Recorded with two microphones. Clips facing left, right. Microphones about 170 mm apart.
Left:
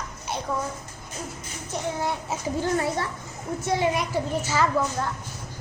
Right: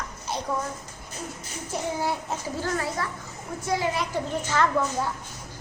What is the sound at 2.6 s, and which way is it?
A child's voice, 25° left (ahead or behind).